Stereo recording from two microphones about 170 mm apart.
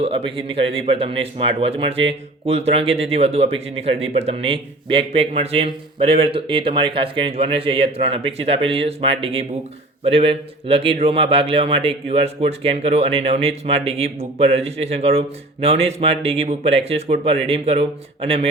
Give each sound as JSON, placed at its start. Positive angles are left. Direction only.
{"t": 0.3, "sound": "a man's voice", "side_deg": -30}